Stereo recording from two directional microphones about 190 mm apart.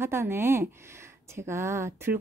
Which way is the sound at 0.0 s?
15° right (ahead or behind).